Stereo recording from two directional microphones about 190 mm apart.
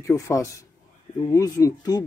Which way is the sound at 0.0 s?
15° left (ahead or behind).